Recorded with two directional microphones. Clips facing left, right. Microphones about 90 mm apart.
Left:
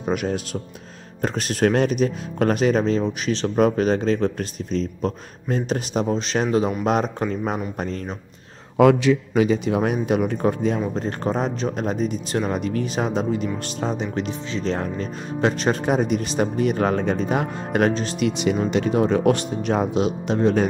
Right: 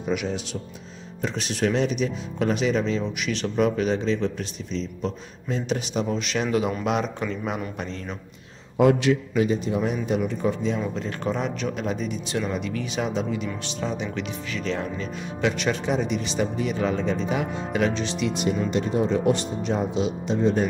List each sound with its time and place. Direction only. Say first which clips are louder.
0.0 s speech: left 3 dB; 45° left (ahead or behind)
8.7 s a man's voice: left 3 dB; 90° left; by 10.8 s 55° left (ahead or behind)
11.0 s speech: left 4 dB; 40° left (ahead or behind)
18.3 s speech: left 3 dB; 90° left
18.7 s speech: left 5 dB; 75° left (ahead or behind)